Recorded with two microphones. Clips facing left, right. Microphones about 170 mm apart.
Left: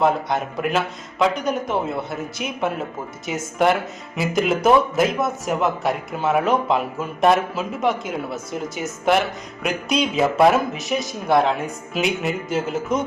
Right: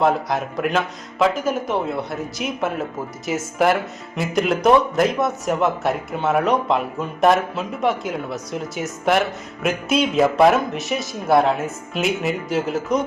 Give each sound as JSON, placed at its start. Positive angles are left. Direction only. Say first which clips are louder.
{"t": 0.0, "sound": "speech", "louder": "even", "side_deg": 0}